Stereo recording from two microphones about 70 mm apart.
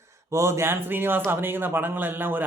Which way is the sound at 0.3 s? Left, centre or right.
Right.